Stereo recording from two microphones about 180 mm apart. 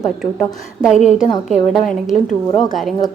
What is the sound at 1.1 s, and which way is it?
Speech, 5° right (ahead or behind).